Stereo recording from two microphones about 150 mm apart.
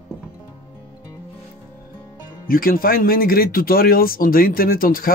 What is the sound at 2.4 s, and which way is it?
Speech, 75° left (ahead or behind).